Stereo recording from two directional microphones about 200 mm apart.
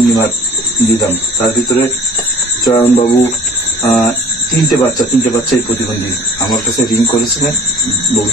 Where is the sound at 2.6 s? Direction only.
20° left (ahead or behind).